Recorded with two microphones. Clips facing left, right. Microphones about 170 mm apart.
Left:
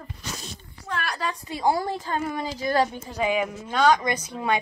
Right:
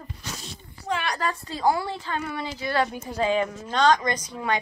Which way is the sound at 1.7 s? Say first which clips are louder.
Left 2 dB; 45° left (ahead or behind).